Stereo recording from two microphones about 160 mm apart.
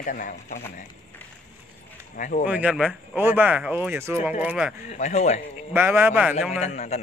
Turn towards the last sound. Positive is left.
turn(degrees=45)  # may be behind; listen again after turning